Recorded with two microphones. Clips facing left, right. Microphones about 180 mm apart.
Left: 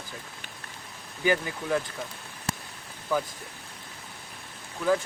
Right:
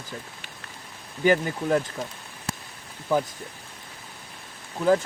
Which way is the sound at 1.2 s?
45° right (ahead or behind).